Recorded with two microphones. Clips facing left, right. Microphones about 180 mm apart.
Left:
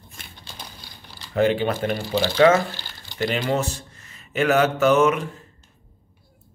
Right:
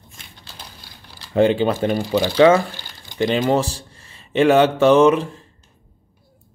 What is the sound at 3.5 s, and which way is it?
Speech, 30° right (ahead or behind).